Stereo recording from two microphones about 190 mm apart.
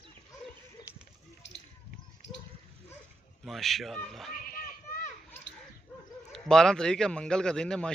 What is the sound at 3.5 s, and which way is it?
Speech, centre (ahead or behind).